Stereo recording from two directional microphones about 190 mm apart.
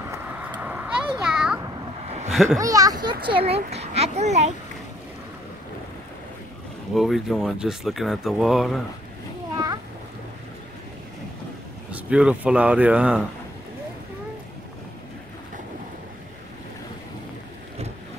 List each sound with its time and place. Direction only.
0.1 s clip-clop: 10° right (ahead or behind)
1.2 s a sound: 5° right (ahead or behind)
2.3 s speech: centre (ahead or behind)
2.6 s a child's voice: 20° right (ahead or behind); by 4.6 s 35° right (ahead or behind)
6.9 s speech: centre (ahead or behind)
11.9 s speech: 5° right (ahead or behind)